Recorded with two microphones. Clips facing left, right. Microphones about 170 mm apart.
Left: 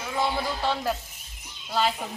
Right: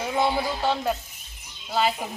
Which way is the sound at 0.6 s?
Centre (ahead or behind).